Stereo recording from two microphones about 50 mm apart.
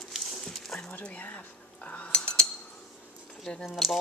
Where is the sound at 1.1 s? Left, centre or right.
Left.